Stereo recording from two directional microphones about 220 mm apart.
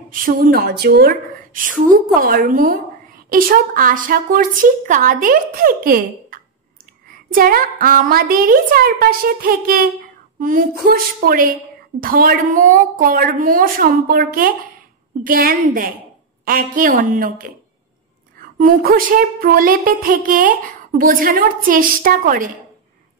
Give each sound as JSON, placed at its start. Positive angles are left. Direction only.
{"t": 0.1, "sound": "a woman's voice", "side_deg": -40}
{"t": 18.6, "sound": "a woman's voice", "side_deg": -40}